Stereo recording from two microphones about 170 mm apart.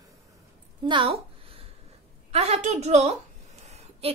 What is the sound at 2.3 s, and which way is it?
Speech, 40° right (ahead or behind).